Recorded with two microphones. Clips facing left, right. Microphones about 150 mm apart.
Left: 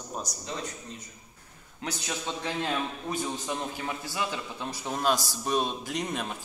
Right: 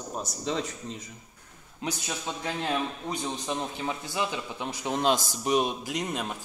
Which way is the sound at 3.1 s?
20° right (ahead or behind).